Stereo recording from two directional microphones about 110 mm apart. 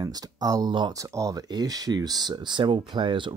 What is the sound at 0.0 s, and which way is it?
Speech, 35° right (ahead or behind).